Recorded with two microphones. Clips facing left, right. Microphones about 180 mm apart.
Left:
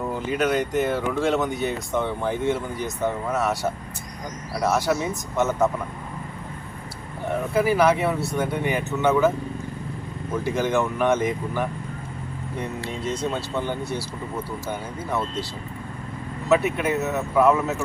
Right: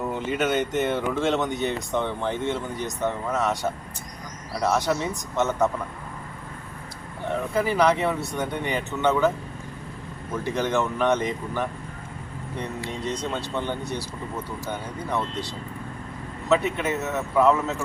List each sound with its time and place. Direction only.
0.0 s speech: centre (ahead or behind)
7.3 s speech: 10° left (ahead or behind)
10.5 s speech: 10° left (ahead or behind)
12.8 s speech: 15° right (ahead or behind)
13.3 s speech: 10° left (ahead or behind)
16.5 s speech: 5° left (ahead or behind)